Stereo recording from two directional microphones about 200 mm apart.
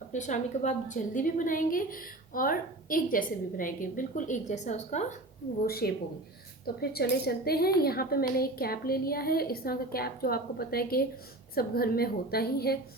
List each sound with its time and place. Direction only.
0.1 s a woman's voice: 35° left (ahead or behind)
5.6 s a woman's voice: 50° left (ahead or behind)
6.9 s a woman's voice: 50° left (ahead or behind)